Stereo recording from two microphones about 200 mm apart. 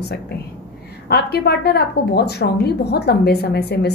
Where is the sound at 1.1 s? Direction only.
55° left (ahead or behind).